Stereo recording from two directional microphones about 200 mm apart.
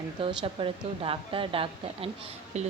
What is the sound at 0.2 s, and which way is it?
A woman's voice, 25° right (ahead or behind).